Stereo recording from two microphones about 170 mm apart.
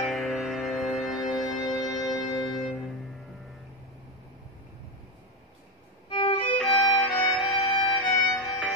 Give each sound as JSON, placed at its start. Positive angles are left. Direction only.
{"t": 0.0, "sound": "music", "side_deg": 0}
{"t": 6.0, "sound": "violin", "side_deg": 30}
{"t": 6.6, "sound": "violin", "side_deg": 0}